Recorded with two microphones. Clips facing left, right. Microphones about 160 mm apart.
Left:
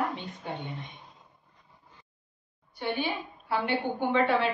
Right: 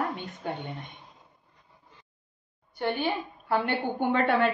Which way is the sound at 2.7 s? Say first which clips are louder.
Right 3 dB; 50° right (ahead or behind).